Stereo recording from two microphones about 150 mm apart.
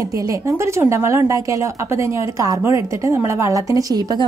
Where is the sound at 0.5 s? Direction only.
20° right (ahead or behind).